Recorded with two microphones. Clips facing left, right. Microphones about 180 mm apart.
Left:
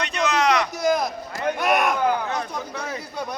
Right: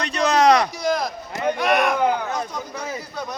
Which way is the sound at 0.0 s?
35° right (ahead or behind).